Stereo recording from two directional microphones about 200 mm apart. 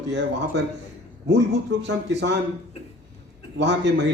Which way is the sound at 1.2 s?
60° right (ahead or behind).